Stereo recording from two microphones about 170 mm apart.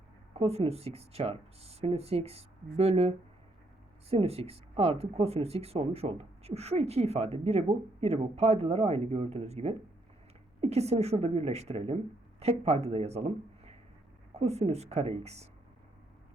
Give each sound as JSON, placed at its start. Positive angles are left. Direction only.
{"t": 0.3, "sound": "speech", "side_deg": -35}